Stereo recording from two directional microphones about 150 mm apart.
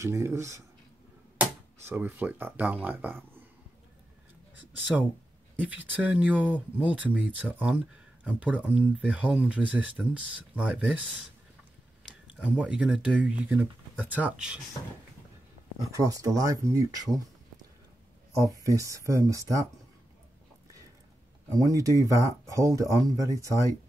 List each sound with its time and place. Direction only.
0.0 s speech: 20° right (ahead or behind)
1.9 s speech: 10° right (ahead or behind)
5.6 s speech: 10° right (ahead or behind)
12.3 s speech: 10° right (ahead or behind)
15.9 s speech: 20° right (ahead or behind)
18.6 s speech: 20° right (ahead or behind)
21.5 s speech: 20° right (ahead or behind)